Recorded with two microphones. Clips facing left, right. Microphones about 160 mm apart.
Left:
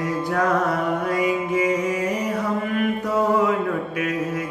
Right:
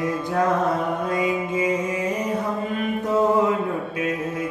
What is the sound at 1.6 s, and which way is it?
Mantra, 25° right (ahead or behind).